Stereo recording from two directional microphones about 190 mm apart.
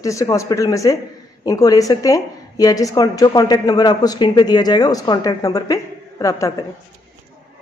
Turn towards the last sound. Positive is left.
turn(degrees=15)  # may be behind; listen again after turning